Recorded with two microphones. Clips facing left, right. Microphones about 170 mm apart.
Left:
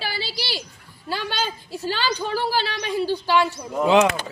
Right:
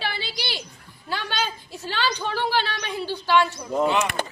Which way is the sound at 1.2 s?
5° left (ahead or behind).